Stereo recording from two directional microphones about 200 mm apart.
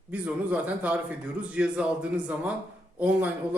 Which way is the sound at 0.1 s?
5° right (ahead or behind).